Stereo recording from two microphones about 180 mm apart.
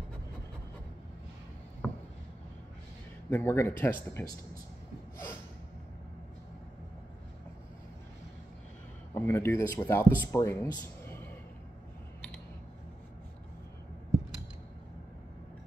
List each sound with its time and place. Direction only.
1.8 s a sound: 5° left (ahead or behind)
3.3 s speech: 15° left (ahead or behind)
9.1 s speech: 15° left (ahead or behind)